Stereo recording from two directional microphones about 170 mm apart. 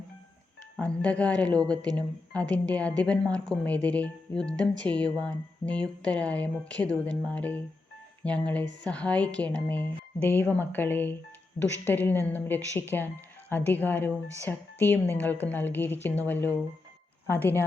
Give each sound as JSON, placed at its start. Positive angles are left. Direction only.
{"t": 0.8, "sound": "speech", "side_deg": 5}